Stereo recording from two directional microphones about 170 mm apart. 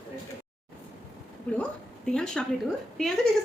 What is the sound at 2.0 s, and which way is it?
Speech, 5° left (ahead or behind).